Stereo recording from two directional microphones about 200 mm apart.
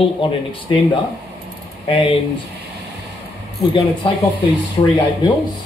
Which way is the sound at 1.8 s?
25° left (ahead or behind).